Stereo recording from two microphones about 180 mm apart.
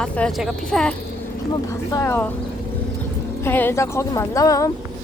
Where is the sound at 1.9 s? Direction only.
15° left (ahead or behind).